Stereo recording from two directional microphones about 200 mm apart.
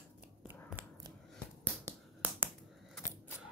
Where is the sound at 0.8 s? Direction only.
10° right (ahead or behind).